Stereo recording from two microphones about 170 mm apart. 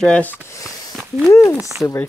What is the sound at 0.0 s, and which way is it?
Speech, 10° left (ahead or behind).